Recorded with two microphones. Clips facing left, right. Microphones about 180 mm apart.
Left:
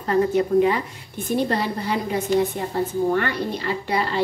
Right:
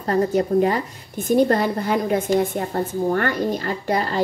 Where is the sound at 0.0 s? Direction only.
40° right (ahead or behind).